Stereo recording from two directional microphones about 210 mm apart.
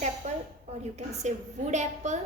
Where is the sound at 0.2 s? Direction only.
30° right (ahead or behind).